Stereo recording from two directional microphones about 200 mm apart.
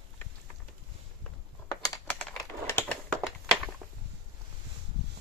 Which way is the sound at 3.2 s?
Centre (ahead or behind).